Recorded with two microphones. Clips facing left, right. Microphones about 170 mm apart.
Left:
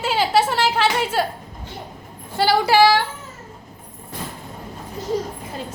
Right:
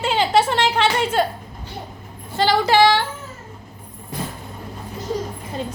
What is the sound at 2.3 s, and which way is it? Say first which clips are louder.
Speech: even; 10° left (ahead or behind).